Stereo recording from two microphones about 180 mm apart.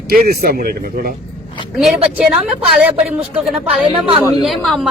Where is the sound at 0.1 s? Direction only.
55° right (ahead or behind).